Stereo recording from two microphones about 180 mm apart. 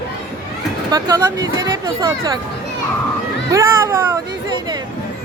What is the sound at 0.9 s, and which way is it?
Speech, 20° right (ahead or behind).